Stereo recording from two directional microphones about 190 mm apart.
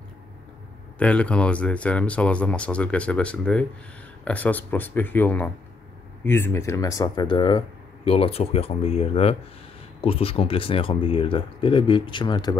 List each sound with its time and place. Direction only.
0.9 s speech: 5° left (ahead or behind); by 12.5 s 20° left (ahead or behind)